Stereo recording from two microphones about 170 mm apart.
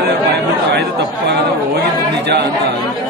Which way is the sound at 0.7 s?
75° right (ahead or behind).